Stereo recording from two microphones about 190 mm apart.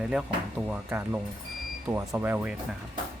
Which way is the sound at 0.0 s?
5° right (ahead or behind).